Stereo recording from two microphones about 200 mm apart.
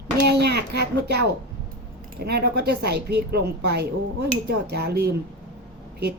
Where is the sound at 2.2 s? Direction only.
55° right (ahead or behind).